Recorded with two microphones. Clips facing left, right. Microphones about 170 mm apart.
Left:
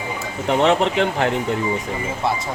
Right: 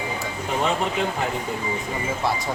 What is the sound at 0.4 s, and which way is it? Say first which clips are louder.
Speech: left 8 dB; 75° left (ahead or behind).